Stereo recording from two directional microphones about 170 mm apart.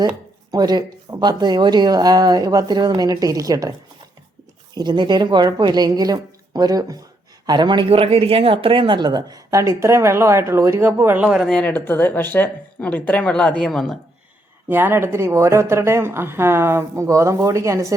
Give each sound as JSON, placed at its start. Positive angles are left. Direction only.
{"t": 0.5, "sound": "speech", "side_deg": -25}
{"t": 4.7, "sound": "speech", "side_deg": -25}
{"t": 11.4, "sound": "speech", "side_deg": 5}
{"t": 14.7, "sound": "a woman's voice", "side_deg": -10}